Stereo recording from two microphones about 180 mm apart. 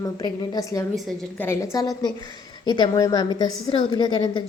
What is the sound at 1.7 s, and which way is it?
A woman's voice, 20° left (ahead or behind).